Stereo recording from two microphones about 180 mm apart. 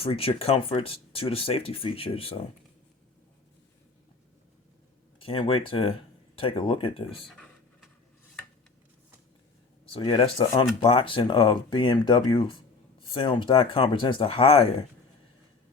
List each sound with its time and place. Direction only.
0.0 s speech: 30° left (ahead or behind)
5.2 s speech: 30° left (ahead or behind)
7.3 s a sound: centre (ahead or behind)
9.9 s speech: 25° left (ahead or behind)